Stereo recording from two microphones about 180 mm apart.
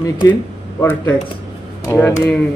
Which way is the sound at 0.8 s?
10° left (ahead or behind).